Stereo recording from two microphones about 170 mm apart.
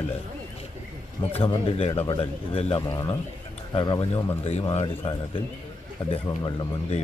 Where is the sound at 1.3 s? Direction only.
35° left (ahead or behind).